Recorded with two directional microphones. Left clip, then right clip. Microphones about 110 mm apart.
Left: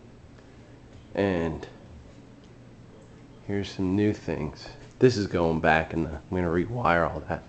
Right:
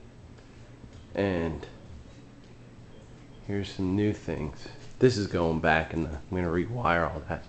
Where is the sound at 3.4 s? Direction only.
20° left (ahead or behind).